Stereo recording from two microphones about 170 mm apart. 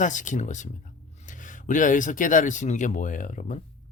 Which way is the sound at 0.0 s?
45° left (ahead or behind).